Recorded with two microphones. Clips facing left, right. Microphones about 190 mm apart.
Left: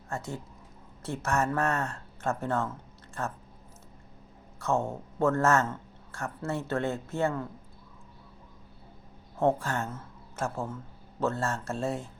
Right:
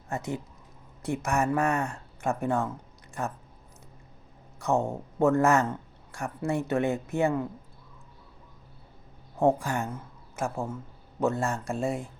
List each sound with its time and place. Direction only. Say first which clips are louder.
0.1 s a man's voice: right 4 dB; 20° right (ahead or behind)
4.6 s a man's voice: right 2 dB; 15° right (ahead or behind)
9.4 s a man's voice: right 2 dB; 15° right (ahead or behind)